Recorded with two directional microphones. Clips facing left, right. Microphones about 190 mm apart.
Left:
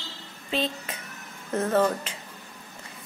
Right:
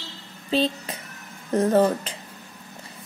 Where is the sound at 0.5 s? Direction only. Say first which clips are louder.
Right 5 dB; 35° right (ahead or behind).